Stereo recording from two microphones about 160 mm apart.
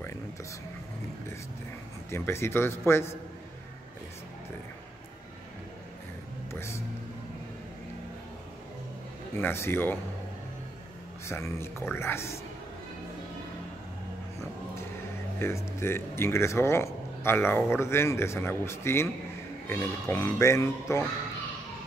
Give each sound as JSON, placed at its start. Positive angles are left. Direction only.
{"t": 2.0, "sound": "speech", "side_deg": 15}
{"t": 6.5, "sound": "vehicle", "side_deg": 15}
{"t": 9.4, "sound": "speech", "side_deg": 15}
{"t": 11.2, "sound": "speech", "side_deg": 15}
{"t": 15.3, "sound": "speech", "side_deg": 15}